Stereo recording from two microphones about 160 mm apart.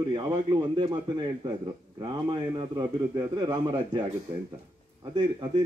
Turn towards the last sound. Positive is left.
turn(degrees=-30)  # may be behind; listen again after turning